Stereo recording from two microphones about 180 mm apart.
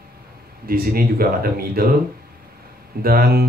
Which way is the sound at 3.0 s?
55° right (ahead or behind).